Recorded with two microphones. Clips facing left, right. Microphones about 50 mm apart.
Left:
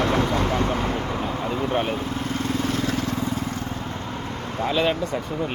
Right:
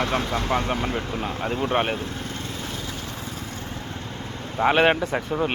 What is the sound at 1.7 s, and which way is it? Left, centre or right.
Speech, right.